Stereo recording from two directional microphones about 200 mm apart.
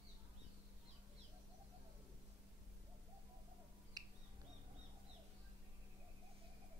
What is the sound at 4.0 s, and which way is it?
Bird, 20° right (ahead or behind).